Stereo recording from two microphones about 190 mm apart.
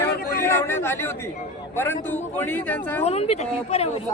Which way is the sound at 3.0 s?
35° left (ahead or behind).